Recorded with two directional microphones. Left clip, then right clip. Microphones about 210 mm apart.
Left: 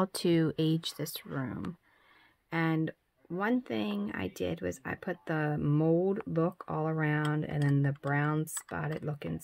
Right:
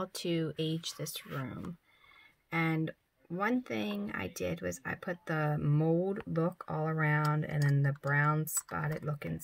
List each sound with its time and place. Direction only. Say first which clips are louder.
0.0 s speech: left 6 dB; 45° left (ahead or behind); by 9.3 s 25° left (ahead or behind)